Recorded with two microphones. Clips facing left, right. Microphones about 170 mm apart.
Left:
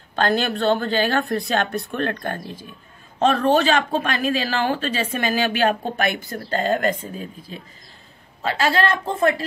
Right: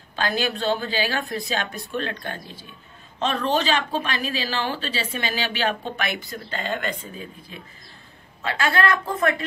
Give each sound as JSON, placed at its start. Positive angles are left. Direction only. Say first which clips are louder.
{"t": 0.1, "sound": "a woman's voice", "louder": "left 4 dB", "side_deg": 55}
{"t": 8.4, "sound": "a woman's voice", "louder": "left 3 dB", "side_deg": 30}